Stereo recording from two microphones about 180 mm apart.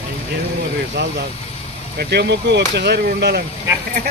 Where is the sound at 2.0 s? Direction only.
65° right (ahead or behind).